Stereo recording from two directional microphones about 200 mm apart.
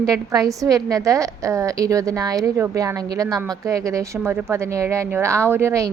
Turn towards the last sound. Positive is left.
turn(degrees=-15)  # may be behind; listen again after turning